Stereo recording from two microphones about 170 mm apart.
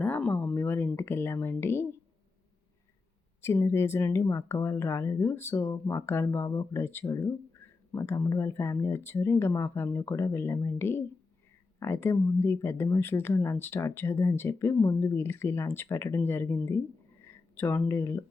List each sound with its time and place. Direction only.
0.0 s speech: 5° left (ahead or behind)
3.4 s speech: 15° left (ahead or behind)